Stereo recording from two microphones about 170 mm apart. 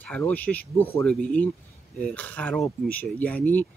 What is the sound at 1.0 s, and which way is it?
Speech, 5° left (ahead or behind).